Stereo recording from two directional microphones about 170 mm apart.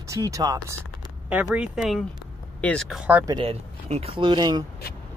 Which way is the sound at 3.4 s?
35° right (ahead or behind).